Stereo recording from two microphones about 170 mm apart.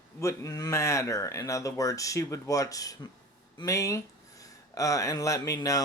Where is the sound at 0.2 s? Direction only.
20° left (ahead or behind).